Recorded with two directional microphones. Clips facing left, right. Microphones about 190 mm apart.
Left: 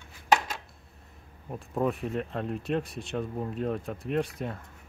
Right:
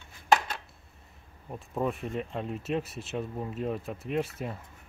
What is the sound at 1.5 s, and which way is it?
Speech, centre (ahead or behind).